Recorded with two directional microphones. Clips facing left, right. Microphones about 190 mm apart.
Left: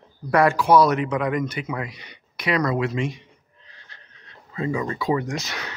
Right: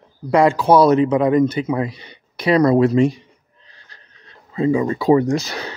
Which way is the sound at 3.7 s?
35° right (ahead or behind).